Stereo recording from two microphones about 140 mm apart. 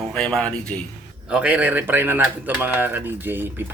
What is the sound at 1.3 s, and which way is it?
Speech, 10° right (ahead or behind).